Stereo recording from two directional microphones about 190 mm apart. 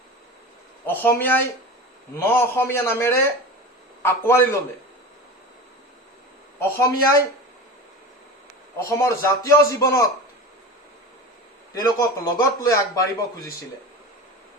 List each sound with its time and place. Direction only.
0.9 s a man's voice: 10° left (ahead or behind)
6.6 s a man's voice: 15° left (ahead or behind)
8.9 s a man's voice: 15° left (ahead or behind)
11.7 s a man's voice: 15° left (ahead or behind)